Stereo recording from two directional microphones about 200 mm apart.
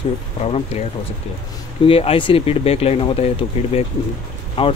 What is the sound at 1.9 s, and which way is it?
Speech, 30° left (ahead or behind).